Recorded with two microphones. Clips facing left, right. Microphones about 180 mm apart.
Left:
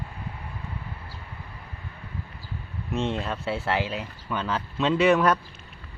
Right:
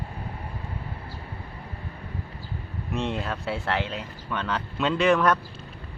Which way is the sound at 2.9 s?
Centre (ahead or behind).